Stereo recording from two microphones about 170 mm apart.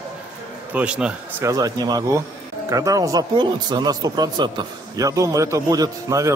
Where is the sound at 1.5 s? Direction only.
20° right (ahead or behind).